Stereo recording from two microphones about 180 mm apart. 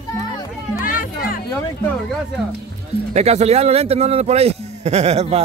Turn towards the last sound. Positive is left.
turn(degrees=-35)  # may be behind; listen again after turning